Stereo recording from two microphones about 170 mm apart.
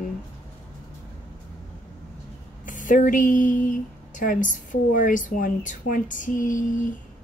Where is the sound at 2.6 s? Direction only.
50° left (ahead or behind).